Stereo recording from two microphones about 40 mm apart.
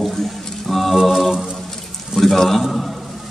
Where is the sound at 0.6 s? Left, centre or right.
Centre.